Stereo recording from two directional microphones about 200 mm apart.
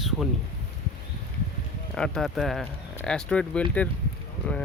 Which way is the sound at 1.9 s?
5° left (ahead or behind).